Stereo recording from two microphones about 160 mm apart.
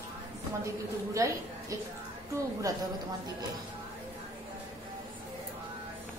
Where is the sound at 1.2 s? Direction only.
20° right (ahead or behind).